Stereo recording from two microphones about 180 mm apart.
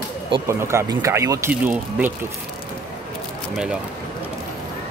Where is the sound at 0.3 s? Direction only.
15° right (ahead or behind).